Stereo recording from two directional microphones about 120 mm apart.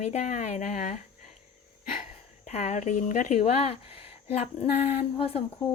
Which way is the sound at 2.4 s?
70° left (ahead or behind).